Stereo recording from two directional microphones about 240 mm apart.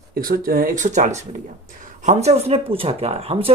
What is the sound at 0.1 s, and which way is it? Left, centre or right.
Speech, right.